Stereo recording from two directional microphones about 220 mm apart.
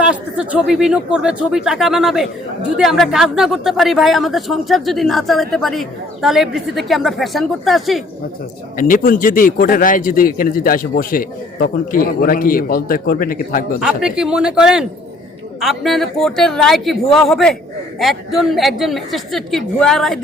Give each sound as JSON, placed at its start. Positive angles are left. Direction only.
{"t": 0.0, "sound": "speech", "side_deg": -5}
{"t": 8.8, "sound": "a man's voice", "side_deg": 35}
{"t": 13.7, "sound": "speech", "side_deg": -5}